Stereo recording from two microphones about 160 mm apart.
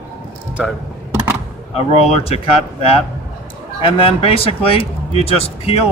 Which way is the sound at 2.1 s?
35° left (ahead or behind).